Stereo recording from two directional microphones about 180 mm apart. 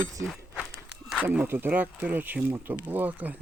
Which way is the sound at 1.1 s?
5° right (ahead or behind).